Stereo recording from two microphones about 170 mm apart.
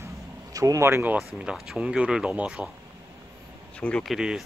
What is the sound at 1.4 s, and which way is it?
Speech, 5° right (ahead or behind).